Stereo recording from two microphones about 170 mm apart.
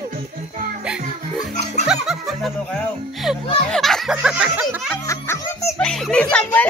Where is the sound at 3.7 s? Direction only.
Centre (ahead or behind).